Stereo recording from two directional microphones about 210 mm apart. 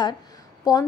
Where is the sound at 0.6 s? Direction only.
15° left (ahead or behind).